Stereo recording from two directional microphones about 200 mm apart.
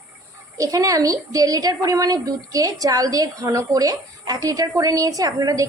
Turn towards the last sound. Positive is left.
turn(degrees=-15)  # may be behind; listen again after turning